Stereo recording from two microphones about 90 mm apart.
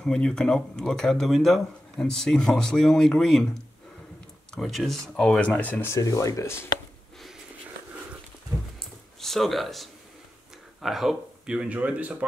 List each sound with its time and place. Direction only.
0.0 s speech: 5° left (ahead or behind)
4.6 s speech: centre (ahead or behind); by 5.9 s 20° left (ahead or behind)
5.9 s speech: 35° left (ahead or behind)
8.7 s a sound: 5° left (ahead or behind)
10.8 s speech: centre (ahead or behind)